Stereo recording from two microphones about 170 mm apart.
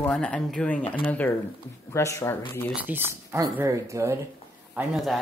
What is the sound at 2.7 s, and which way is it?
Speech, 10° right (ahead or behind).